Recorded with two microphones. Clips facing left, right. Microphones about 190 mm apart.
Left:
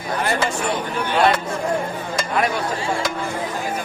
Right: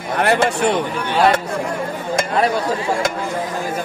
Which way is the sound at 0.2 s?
65° right (ahead or behind).